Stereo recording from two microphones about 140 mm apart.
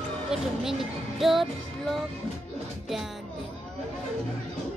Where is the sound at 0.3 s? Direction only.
Centre (ahead or behind).